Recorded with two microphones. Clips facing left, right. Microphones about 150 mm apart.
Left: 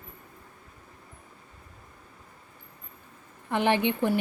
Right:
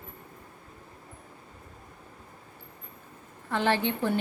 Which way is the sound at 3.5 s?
15° left (ahead or behind).